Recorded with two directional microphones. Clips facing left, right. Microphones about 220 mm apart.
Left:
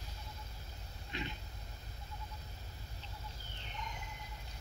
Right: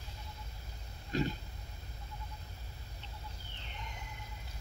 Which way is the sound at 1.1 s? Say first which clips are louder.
Right 10 dB; 40° right (ahead or behind).